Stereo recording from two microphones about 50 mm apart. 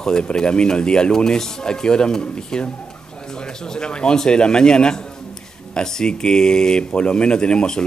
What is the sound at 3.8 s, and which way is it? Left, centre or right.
Speech, centre.